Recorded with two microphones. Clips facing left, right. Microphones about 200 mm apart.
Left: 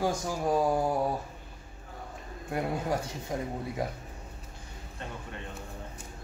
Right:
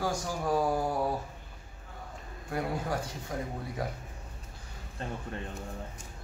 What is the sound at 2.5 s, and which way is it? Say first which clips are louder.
Speech: left 2 dB; 20° left (ahead or behind).